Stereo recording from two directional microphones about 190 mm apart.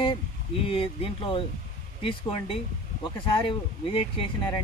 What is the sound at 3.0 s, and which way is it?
Speech, 25° left (ahead or behind).